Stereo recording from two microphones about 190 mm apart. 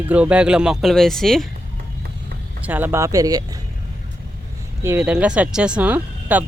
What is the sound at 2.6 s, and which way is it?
Speech, 10° right (ahead or behind).